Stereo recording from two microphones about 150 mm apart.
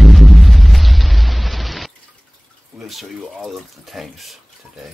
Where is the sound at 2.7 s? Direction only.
Centre (ahead or behind).